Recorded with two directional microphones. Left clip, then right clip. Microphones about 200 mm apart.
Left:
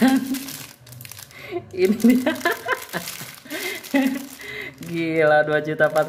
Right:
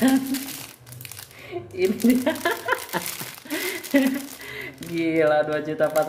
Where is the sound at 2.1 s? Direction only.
20° left (ahead or behind).